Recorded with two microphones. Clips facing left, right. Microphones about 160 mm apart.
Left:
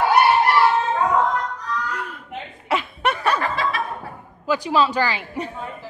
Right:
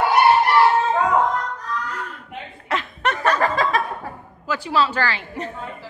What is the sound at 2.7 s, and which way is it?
Chuckle, 10° left (ahead or behind).